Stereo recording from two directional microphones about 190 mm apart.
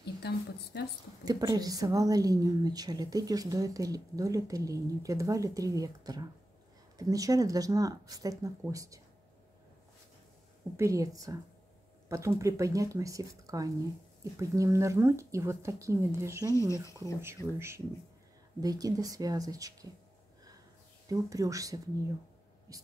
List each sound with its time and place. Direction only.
0.2 s a woman's voice: 60° left (ahead or behind)
1.2 s a woman's voice: 20° right (ahead or behind)
10.8 s speech: 15° right (ahead or behind)
16.5 s speech: 15° left (ahead or behind)
16.8 s a woman's voice: 15° right (ahead or behind)
21.1 s speech: 15° right (ahead or behind)